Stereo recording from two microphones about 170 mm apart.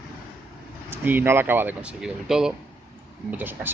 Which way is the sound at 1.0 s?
10° right (ahead or behind).